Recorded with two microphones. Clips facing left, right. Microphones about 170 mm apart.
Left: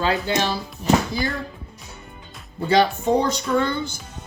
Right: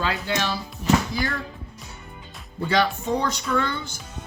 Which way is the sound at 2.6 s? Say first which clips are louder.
Left 4 dB; 35° left (ahead or behind).